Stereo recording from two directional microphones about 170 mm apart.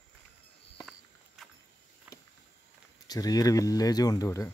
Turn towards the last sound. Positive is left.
turn(degrees=20)  # may be behind; listen again after turning